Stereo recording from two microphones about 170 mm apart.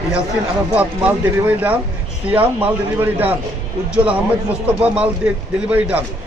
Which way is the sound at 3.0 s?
10° right (ahead or behind).